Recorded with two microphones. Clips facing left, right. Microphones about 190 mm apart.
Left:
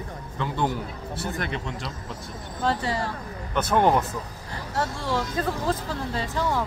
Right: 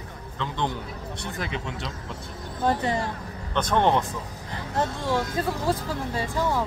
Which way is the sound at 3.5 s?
5° left (ahead or behind).